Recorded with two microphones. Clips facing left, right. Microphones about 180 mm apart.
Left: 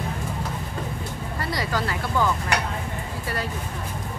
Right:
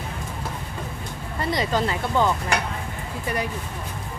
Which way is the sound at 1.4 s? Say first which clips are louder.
Right 4 dB; 20° right (ahead or behind).